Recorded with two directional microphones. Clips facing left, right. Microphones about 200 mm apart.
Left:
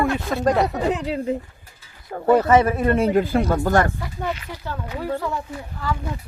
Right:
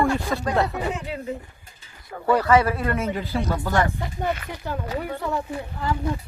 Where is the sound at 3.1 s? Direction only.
50° left (ahead or behind).